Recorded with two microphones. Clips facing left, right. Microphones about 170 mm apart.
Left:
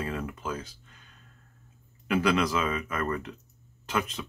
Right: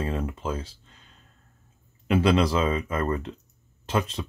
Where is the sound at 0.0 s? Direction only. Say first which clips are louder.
Right 4 dB; 25° right (ahead or behind).